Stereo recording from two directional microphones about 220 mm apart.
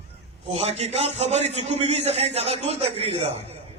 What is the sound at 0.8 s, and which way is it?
A man's voice, 30° right (ahead or behind).